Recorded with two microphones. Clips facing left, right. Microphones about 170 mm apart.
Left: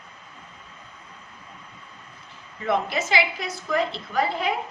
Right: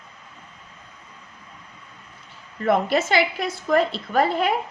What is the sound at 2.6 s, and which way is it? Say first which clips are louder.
A woman's voice: right 5 dB; 55° right (ahead or behind).